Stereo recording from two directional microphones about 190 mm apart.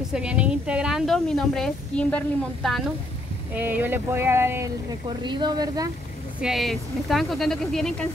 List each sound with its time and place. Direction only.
0.1 s a woman's voice: 5° right (ahead or behind)
3.5 s speech: 10° right (ahead or behind)
5.2 s speech: 25° right (ahead or behind)
6.4 s a woman's voice: centre (ahead or behind)